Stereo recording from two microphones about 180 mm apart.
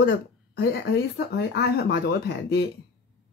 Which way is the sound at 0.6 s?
65° left (ahead or behind).